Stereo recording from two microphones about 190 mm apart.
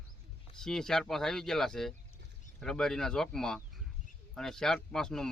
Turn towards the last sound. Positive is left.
turn(degrees=5)  # may be behind; listen again after turning